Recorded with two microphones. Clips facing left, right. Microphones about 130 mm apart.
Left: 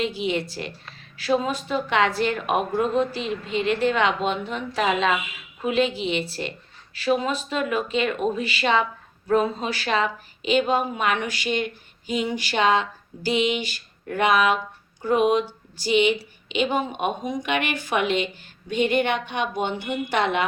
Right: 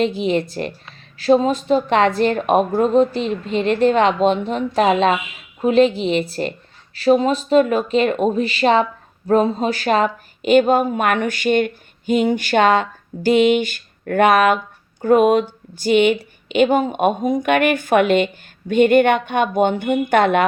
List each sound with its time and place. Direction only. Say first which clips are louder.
0.2 s a woman's voice: right 6 dB; 40° right (ahead or behind)